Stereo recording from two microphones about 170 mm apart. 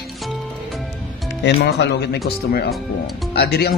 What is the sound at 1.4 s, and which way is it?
Speech, 80° left.